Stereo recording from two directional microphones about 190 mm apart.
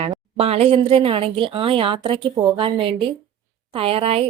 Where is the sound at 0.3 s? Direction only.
30° right (ahead or behind).